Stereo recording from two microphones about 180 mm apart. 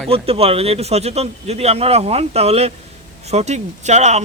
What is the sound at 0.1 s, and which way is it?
Speech, 30° right (ahead or behind).